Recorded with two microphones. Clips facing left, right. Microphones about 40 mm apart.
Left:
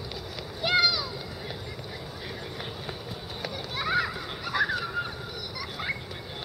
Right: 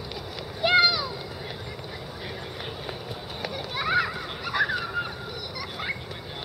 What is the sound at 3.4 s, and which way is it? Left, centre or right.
Children playing, centre.